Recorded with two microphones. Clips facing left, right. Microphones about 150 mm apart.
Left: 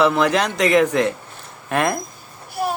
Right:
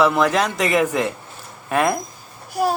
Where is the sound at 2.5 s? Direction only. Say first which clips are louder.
Right 3 dB; 40° right (ahead or behind).